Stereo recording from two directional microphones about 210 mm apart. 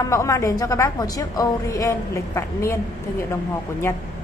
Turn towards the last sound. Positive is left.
turn(degrees=10)  # may be behind; listen again after turning